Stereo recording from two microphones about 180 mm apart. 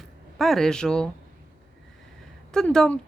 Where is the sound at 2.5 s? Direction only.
5° left (ahead or behind).